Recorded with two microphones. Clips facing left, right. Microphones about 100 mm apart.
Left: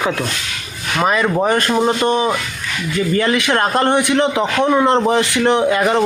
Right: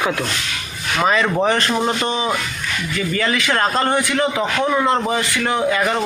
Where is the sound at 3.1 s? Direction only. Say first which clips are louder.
Left 2 dB; 20° left (ahead or behind).